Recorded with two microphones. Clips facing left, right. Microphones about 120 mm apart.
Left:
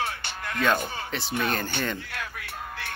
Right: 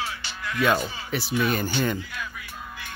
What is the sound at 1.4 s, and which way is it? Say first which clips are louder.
Speech: right 3 dB; 5° right (ahead or behind).